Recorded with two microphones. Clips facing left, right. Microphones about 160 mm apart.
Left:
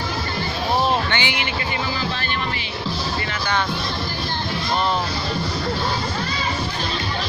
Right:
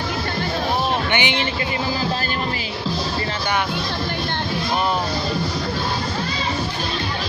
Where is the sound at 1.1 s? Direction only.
20° right (ahead or behind).